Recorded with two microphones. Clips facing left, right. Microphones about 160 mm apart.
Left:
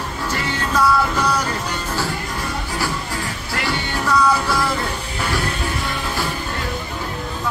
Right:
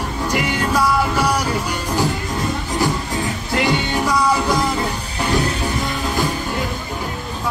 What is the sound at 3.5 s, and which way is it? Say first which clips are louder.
Music: right 6 dB; 20° right (ahead or behind).